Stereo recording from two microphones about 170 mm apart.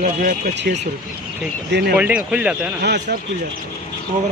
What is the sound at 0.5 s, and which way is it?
Speech, 90° right.